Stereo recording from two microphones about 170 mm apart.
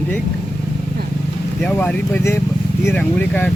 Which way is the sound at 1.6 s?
5° left (ahead or behind).